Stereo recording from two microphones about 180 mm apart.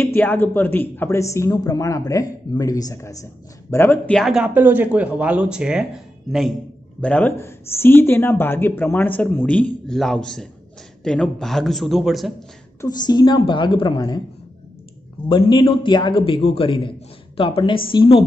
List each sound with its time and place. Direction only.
0.0 s speech: 10° left (ahead or behind)
12.8 s a man's voice: 25° left (ahead or behind)
15.2 s a man's voice: 25° left (ahead or behind)